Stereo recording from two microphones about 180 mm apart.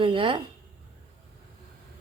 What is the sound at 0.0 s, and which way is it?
Speech, 30° right (ahead or behind).